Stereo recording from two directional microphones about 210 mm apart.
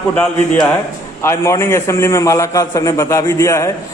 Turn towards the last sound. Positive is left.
turn(degrees=15)  # may be behind; listen again after turning